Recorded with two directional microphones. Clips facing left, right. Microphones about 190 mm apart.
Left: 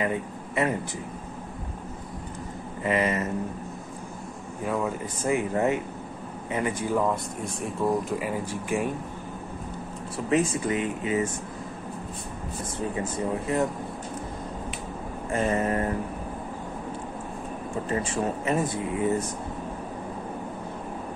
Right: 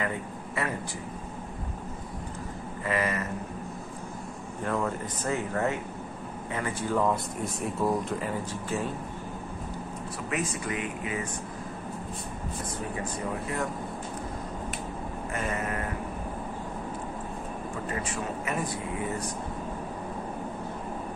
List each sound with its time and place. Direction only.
0.0 s speech: 20° left (ahead or behind)
2.8 s speech: 20° left (ahead or behind)
4.6 s speech: 10° left (ahead or behind)
7.6 s speech: 5° left (ahead or behind)
10.3 s speech: 30° left (ahead or behind)
12.9 s speech: 25° left (ahead or behind)
15.3 s a sound: 30° left (ahead or behind)
17.8 s speech: 30° left (ahead or behind)